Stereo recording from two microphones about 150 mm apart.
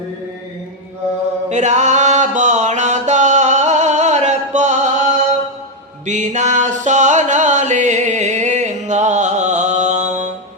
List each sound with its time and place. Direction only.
1.5 s music: 50° right (ahead or behind)